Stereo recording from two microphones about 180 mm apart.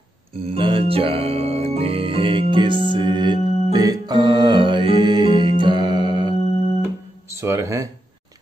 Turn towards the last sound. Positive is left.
turn(degrees=-15)  # may be behind; listen again after turning